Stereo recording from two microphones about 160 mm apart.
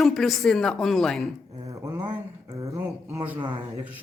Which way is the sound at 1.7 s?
15° right (ahead or behind).